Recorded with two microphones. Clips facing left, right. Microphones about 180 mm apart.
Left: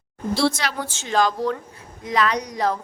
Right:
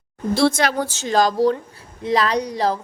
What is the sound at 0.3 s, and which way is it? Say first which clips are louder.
A woman's voice: right 5 dB; 50° right (ahead or behind).